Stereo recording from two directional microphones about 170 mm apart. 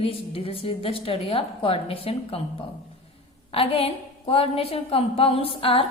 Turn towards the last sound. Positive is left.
turn(degrees=35)  # may be behind; listen again after turning